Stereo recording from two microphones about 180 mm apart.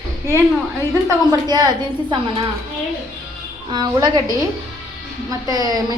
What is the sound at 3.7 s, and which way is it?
Speech, 25° right (ahead or behind).